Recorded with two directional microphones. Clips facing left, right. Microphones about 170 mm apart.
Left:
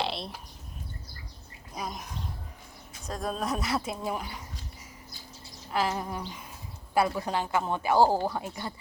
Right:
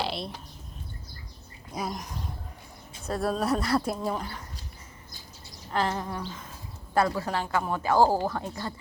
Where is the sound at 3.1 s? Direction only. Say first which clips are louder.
Right 5 dB; 5° right (ahead or behind).